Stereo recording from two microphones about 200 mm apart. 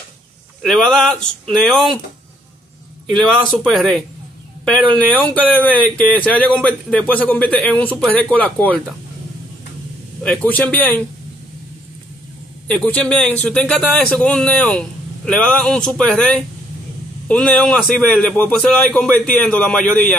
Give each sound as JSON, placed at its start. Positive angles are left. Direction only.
{"t": 0.6, "sound": "a man's voice", "side_deg": 0}
{"t": 3.1, "sound": "a man's voice", "side_deg": 0}
{"t": 10.2, "sound": "speech", "side_deg": 5}
{"t": 12.6, "sound": "a man's voice", "side_deg": 5}